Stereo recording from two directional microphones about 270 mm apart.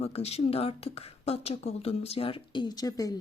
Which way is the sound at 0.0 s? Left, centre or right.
Left.